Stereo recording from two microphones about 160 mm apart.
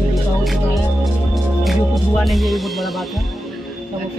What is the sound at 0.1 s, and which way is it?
Music, centre (ahead or behind).